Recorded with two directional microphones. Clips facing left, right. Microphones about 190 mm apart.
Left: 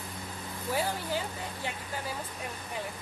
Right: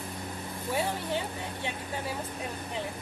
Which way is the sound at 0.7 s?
Centre (ahead or behind).